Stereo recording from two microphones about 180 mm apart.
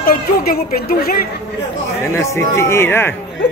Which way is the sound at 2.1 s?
15° left (ahead or behind).